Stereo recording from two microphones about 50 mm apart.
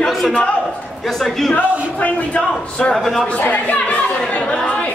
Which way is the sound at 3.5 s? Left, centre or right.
Left.